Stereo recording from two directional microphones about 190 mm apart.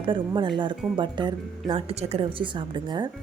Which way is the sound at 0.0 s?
25° right (ahead or behind).